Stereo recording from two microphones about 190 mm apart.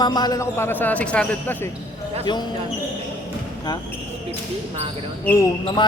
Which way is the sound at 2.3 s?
25° left (ahead or behind).